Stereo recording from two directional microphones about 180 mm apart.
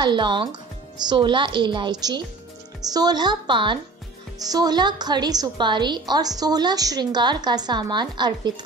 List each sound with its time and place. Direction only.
0.0 s a woman's voice: 25° right (ahead or behind)